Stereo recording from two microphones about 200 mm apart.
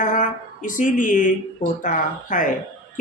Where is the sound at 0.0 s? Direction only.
40° left (ahead or behind).